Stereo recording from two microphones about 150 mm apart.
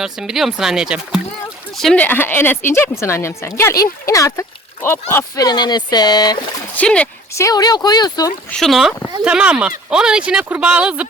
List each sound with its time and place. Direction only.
0.0 s speech: 5° right (ahead or behind); by 6.4 s 25° left (ahead or behind)
6.7 s speech: 10° left (ahead or behind)
7.3 s speech: 25° left (ahead or behind)
8.5 s speech: centre (ahead or behind)